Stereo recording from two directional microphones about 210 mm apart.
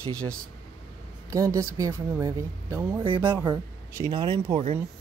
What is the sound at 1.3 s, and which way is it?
Speech, 15° right (ahead or behind).